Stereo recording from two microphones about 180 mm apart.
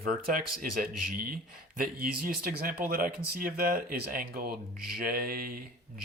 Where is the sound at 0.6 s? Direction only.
50° right (ahead or behind).